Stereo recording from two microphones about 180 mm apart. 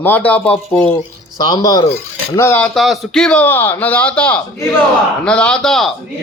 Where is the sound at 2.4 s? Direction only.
10° left (ahead or behind).